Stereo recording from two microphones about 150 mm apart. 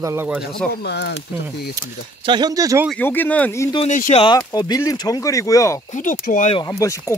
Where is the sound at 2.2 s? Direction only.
30° right (ahead or behind).